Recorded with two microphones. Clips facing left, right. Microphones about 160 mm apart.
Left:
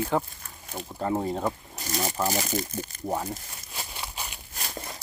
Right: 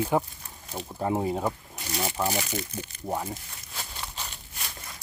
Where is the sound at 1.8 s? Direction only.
40° left (ahead or behind).